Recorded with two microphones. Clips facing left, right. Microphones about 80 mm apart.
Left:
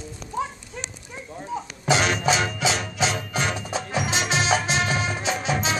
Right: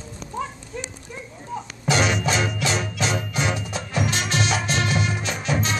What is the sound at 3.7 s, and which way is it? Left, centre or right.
Music, centre.